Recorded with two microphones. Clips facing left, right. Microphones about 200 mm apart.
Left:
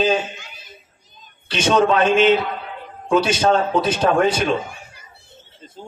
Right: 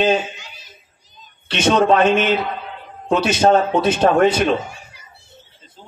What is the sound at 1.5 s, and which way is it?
Speech, 25° right (ahead or behind).